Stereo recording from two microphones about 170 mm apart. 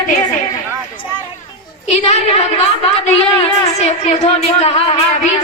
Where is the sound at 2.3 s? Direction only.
35° left (ahead or behind).